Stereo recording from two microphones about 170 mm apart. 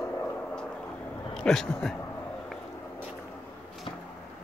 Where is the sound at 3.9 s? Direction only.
30° left (ahead or behind).